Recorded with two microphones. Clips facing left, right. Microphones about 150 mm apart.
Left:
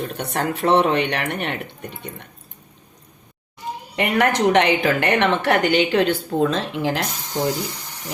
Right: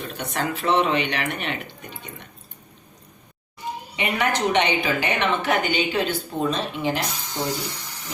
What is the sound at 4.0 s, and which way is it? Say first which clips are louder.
A woman's voice: left 5 dB; 85° left.